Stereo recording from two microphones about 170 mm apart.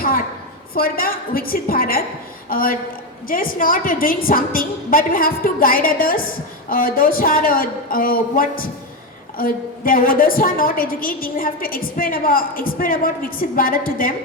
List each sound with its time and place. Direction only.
0.7 s a woman's voice: 60° left (ahead or behind)